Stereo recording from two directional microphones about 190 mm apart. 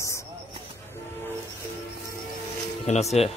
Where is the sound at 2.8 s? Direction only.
35° left (ahead or behind).